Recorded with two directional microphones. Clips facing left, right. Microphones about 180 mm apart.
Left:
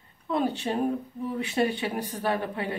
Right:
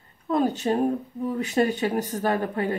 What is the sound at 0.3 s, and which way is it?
Speech, 45° right (ahead or behind).